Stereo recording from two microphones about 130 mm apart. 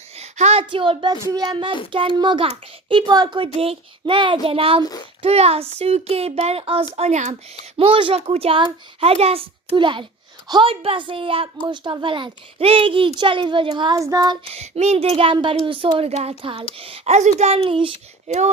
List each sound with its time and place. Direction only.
0.2 s a sound: 55° right (ahead or behind)
0.7 s speech: 40° right (ahead or behind)
6.9 s speech: 60° right (ahead or behind)
7.8 s speech: 45° right (ahead or behind)
9.7 s speech: 40° right (ahead or behind)
14.0 s child singing: 25° right (ahead or behind)
14.5 s speech: 55° right (ahead or behind)
16.4 s speech: 45° right (ahead or behind)
18.3 s speech: 60° right (ahead or behind)